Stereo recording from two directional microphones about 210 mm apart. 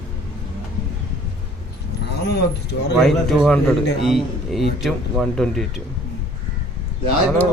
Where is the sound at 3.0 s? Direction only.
Centre (ahead or behind).